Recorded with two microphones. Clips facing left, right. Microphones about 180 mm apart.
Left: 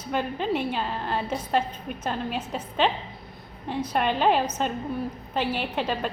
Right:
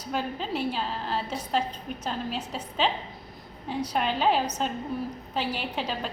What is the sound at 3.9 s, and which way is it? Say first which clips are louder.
A woman's voice: left 3 dB; 55° left (ahead or behind).